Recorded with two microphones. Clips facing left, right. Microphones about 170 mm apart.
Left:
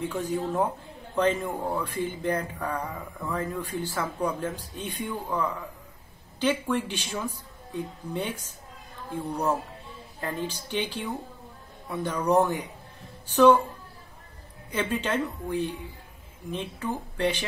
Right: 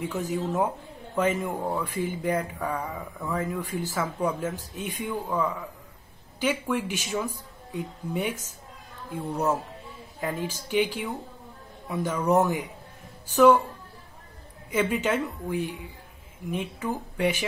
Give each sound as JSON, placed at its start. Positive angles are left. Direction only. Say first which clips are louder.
{"t": 0.0, "sound": "speech", "louder": "even", "side_deg": -10}
{"t": 14.7, "sound": "speech", "louder": "right 3 dB", "side_deg": -10}